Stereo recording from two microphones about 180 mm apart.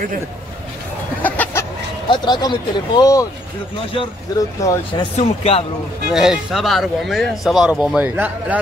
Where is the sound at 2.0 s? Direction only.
25° left (ahead or behind).